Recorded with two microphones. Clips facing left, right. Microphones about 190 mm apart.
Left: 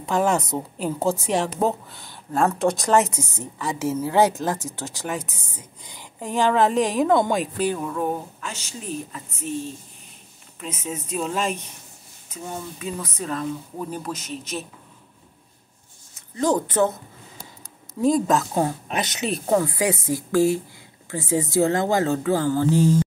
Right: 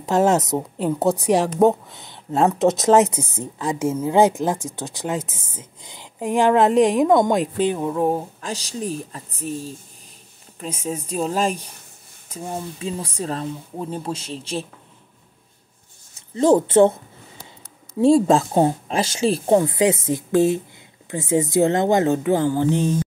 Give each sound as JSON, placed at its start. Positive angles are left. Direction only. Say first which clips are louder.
{"t": 0.0, "sound": "a woman's voice", "louder": "right 4 dB", "side_deg": -20}
{"t": 1.4, "sound": "speech", "louder": "right 6 dB", "side_deg": 0}
{"t": 1.9, "sound": "a woman's voice", "louder": "right 4 dB", "side_deg": -20}
{"t": 5.3, "sound": "speech", "louder": "right 1 dB", "side_deg": 15}
{"t": 5.6, "sound": "a woman's voice", "louder": "right 2 dB", "side_deg": -20}
{"t": 16.2, "sound": "a woman's voice", "louder": "right 6 dB", "side_deg": -25}
{"t": 18.0, "sound": "a woman's voice", "louder": "right 5 dB", "side_deg": -30}